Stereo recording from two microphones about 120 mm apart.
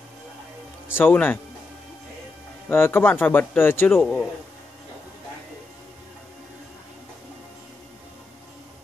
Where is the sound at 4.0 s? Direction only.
10° left (ahead or behind).